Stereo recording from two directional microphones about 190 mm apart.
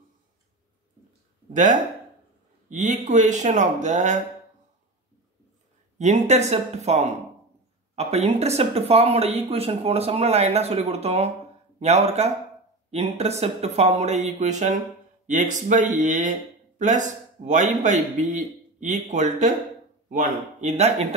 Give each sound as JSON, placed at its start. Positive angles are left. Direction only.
{"t": 1.5, "sound": "speech", "side_deg": -40}
{"t": 5.9, "sound": "speech", "side_deg": -35}